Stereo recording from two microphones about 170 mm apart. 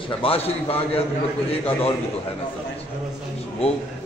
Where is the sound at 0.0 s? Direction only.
35° left (ahead or behind).